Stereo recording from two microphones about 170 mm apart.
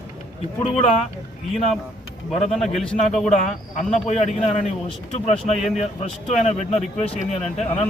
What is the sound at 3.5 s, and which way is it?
Speech, 40° left (ahead or behind).